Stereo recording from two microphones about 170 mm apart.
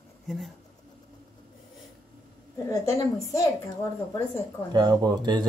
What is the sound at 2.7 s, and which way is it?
Speech, 20° left (ahead or behind).